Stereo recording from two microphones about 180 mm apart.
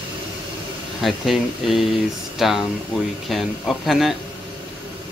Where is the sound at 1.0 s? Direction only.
Centre (ahead or behind).